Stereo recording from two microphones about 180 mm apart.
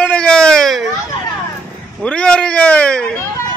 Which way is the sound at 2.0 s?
5° left (ahead or behind).